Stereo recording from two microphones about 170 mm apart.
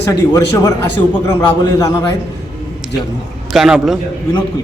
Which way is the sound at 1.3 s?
25° left (ahead or behind).